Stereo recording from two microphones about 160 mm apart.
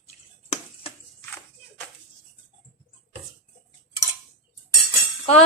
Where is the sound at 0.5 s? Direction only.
35° left (ahead or behind).